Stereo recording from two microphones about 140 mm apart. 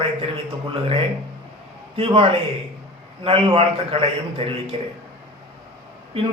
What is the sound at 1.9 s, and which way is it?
A man's voice, 40° right (ahead or behind).